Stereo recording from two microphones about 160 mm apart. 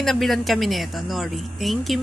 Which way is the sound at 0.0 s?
Centre (ahead or behind).